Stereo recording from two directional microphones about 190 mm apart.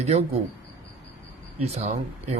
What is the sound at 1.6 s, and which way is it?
Speech, 35° right (ahead or behind).